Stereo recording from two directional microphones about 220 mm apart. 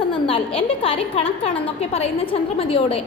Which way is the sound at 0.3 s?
25° left (ahead or behind).